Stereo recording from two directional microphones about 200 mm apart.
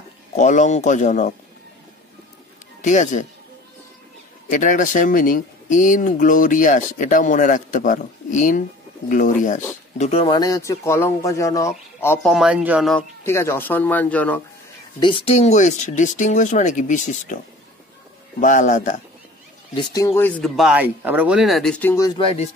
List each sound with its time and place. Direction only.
0.3 s speech: 35° left (ahead or behind)
2.8 s speech: 40° left (ahead or behind)
4.5 s speech: 40° left (ahead or behind); by 12.9 s 5° right (ahead or behind)
12.9 s speech: 15° left (ahead or behind)
15.0 s speech: 25° left (ahead or behind)
18.4 s speech: 40° left (ahead or behind)
19.7 s speech: 20° left (ahead or behind)